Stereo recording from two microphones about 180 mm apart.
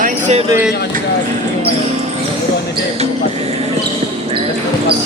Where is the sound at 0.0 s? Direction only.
40° right (ahead or behind).